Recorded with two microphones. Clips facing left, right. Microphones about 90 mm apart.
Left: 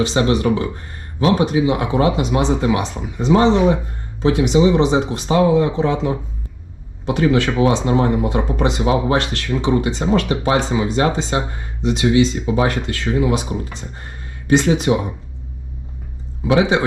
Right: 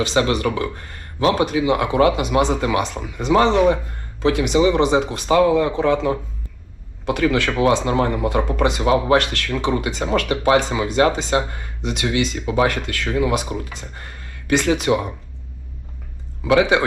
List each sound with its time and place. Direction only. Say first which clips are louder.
0.0 s speech: left 2 dB; 20° left (ahead or behind)
7.2 s speech: left 3 dB; 20° left (ahead or behind)
16.6 s speech: even; 20° left (ahead or behind)